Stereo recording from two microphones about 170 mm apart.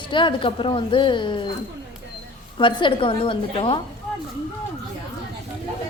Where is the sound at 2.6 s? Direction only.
30° left (ahead or behind).